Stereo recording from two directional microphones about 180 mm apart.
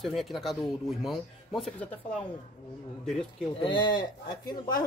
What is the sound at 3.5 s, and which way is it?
Speech, 25° left (ahead or behind).